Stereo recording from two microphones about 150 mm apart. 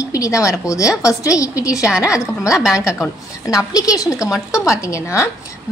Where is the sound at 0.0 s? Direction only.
20° left (ahead or behind).